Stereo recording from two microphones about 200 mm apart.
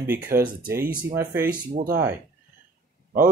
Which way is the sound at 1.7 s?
40° right (ahead or behind).